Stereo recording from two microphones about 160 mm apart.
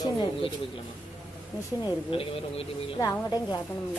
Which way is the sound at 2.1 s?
35° left (ahead or behind).